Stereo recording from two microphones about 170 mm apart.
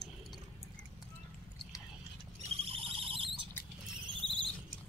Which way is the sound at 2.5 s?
35° right (ahead or behind).